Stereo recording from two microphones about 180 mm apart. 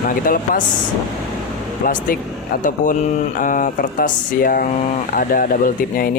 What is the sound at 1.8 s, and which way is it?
Speech, 50° left (ahead or behind).